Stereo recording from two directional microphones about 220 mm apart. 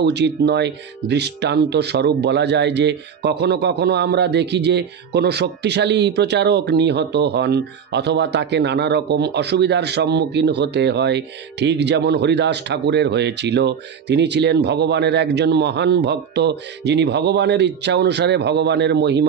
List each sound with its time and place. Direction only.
0.0 s speech: 50° right (ahead or behind)